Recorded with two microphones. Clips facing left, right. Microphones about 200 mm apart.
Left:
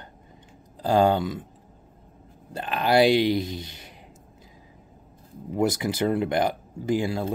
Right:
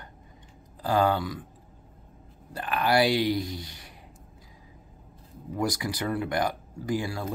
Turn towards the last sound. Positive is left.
turn(degrees=20)  # may be behind; listen again after turning